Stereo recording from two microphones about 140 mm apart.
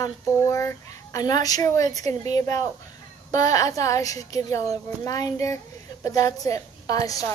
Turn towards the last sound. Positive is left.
turn(degrees=25)  # may be behind; listen again after turning